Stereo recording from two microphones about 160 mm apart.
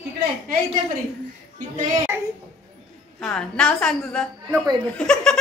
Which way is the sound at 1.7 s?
50° right (ahead or behind).